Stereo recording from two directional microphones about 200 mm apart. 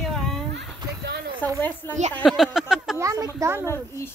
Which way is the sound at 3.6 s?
10° left (ahead or behind).